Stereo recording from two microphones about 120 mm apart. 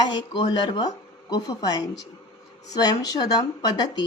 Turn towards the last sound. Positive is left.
turn(degrees=35)  # may be behind; listen again after turning